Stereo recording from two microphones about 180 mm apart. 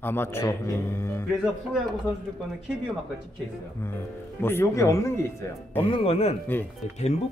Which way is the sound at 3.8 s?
10° left (ahead or behind).